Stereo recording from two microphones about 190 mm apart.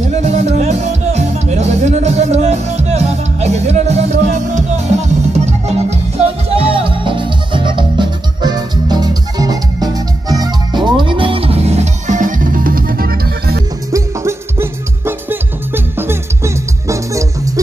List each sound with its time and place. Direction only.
0.2 s music: 35° right (ahead or behind); by 13.6 s 50° right (ahead or behind)
13.9 s music: 15° right (ahead or behind)